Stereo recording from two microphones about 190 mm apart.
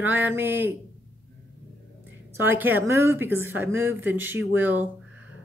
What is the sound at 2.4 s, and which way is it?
A woman's voice, 10° right (ahead or behind).